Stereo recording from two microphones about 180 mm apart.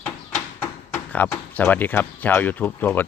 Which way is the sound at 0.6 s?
10° left (ahead or behind).